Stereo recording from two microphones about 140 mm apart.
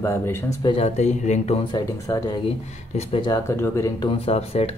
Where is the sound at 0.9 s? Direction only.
55° left (ahead or behind).